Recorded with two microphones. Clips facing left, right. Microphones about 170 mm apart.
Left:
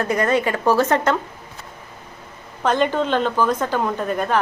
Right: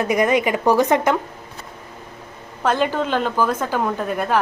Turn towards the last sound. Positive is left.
turn(degrees=-5)  # may be behind; listen again after turning